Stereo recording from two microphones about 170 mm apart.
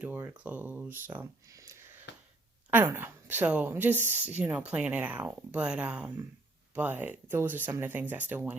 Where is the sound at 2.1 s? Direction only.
90° left.